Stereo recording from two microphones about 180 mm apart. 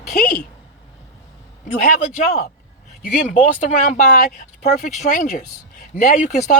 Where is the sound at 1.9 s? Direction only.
45° left (ahead or behind).